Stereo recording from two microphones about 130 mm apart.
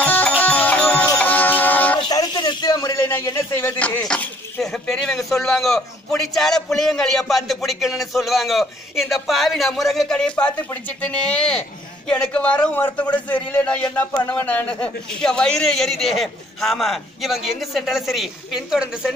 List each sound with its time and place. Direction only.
0.0 s music: 10° left (ahead or behind)
2.0 s a sound: 30° left (ahead or behind); by 5.1 s 5° left (ahead or behind)
5.3 s speech: centre (ahead or behind)